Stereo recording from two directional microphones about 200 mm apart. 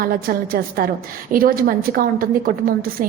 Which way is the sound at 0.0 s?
45° right (ahead or behind).